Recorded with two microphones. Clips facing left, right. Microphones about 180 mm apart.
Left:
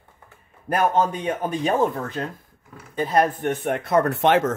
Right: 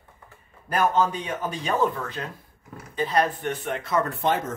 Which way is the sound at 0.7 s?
55° left (ahead or behind).